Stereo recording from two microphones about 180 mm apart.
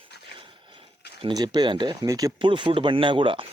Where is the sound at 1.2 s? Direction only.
25° right (ahead or behind).